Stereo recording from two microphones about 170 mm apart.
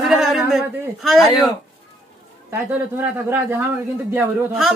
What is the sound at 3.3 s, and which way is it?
Speech, 10° right (ahead or behind).